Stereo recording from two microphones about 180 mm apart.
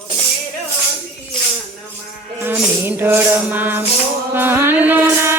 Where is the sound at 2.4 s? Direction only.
10° right (ahead or behind).